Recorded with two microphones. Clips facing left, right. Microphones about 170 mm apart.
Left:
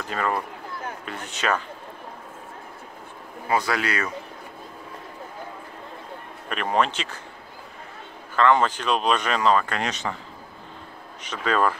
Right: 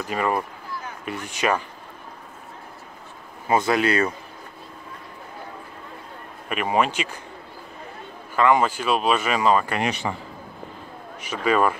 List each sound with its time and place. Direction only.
0.0 s speech: 10° right (ahead or behind)
3.4 s speech: 25° right (ahead or behind)
6.5 s speech: 10° right (ahead or behind)
8.4 s speech: 10° right (ahead or behind)
11.2 s speech: 10° right (ahead or behind)